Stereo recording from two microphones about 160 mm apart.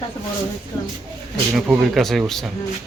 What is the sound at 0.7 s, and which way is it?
Speech, 25° left (ahead or behind).